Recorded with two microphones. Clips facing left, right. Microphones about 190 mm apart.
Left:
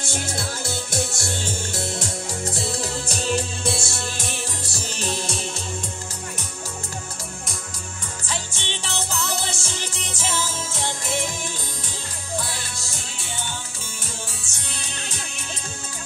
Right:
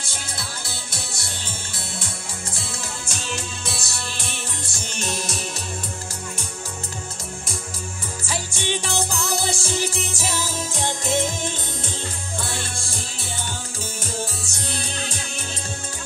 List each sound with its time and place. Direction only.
0.0 s music: 50° left (ahead or behind); by 3.9 s 30° left (ahead or behind)
3.9 s music: 40° left (ahead or behind)
8.3 s music: 10° right (ahead or behind)
14.7 s music: 30° right (ahead or behind)